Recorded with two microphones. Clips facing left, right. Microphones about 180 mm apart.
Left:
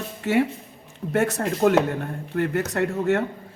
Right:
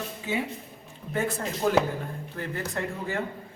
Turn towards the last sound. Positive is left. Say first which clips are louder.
# left 9 dB
turn(degrees=75)  # may be behind; listen again after turning